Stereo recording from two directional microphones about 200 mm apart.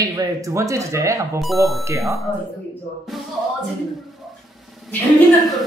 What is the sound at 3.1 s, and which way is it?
Music, centre (ahead or behind).